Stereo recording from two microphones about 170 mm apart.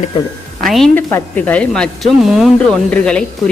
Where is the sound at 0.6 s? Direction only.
Centre (ahead or behind).